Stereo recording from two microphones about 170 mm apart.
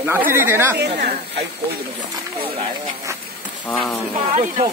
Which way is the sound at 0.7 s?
75° right (ahead or behind).